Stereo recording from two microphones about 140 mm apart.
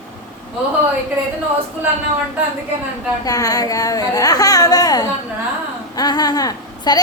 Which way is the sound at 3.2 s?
25° left (ahead or behind).